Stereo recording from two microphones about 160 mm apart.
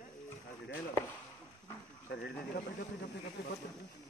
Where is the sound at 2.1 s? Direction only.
90° left.